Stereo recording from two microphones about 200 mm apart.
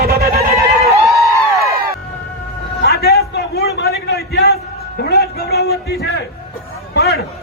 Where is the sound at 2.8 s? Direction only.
55° left (ahead or behind).